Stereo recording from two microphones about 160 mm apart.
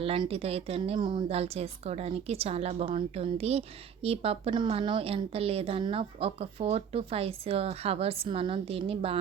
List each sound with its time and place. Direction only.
0.0 s a woman's voice: 35° right (ahead or behind)